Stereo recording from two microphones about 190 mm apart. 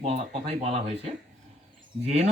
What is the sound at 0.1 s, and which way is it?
Speech, 35° right (ahead or behind).